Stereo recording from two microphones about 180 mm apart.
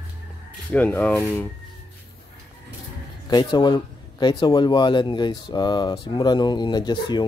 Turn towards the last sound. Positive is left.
turn(degrees=25)  # may be behind; listen again after turning